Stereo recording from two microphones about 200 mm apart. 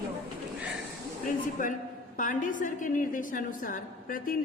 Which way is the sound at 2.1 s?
40° left (ahead or behind).